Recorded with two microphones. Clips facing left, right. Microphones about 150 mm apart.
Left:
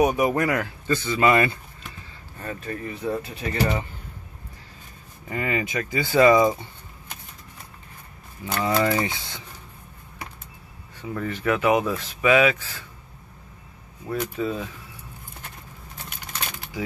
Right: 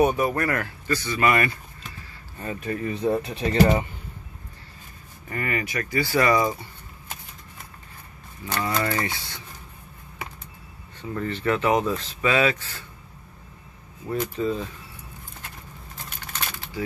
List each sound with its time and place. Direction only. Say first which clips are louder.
0.0 s speech: left 1 dB; 15° left (ahead or behind)
2.4 s speech: right 3 dB; 20° right (ahead or behind)
5.3 s speech: left 2 dB; 20° left (ahead or behind)
8.5 s speech: left 4 dB; 10° left (ahead or behind)
11.0 s speech: even; 10° left (ahead or behind)
14.0 s speech: right 1 dB; 10° left (ahead or behind)